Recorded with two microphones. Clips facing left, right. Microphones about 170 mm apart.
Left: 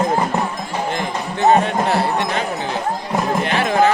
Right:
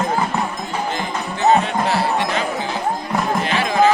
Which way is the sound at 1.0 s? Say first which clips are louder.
Left 2 dB; 55° left (ahead or behind).